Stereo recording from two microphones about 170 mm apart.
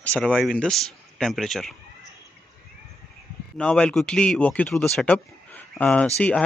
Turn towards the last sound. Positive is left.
turn(degrees=5)  # may be behind; listen again after turning